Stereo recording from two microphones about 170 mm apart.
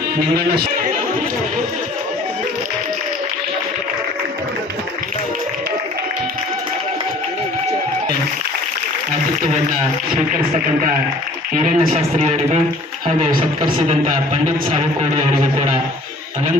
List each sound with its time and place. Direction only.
11.5 s speech: 50° right (ahead or behind)